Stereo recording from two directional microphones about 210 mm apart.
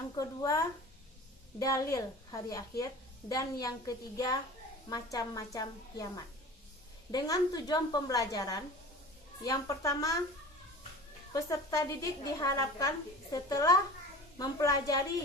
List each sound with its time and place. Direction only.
0.2 s a woman's voice: 15° left (ahead or behind)
11.3 s a woman's voice: 15° left (ahead or behind)